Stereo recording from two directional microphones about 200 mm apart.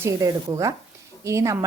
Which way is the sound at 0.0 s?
15° right (ahead or behind).